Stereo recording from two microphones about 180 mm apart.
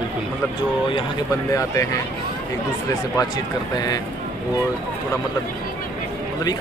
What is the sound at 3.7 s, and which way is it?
Speech, 20° left (ahead or behind).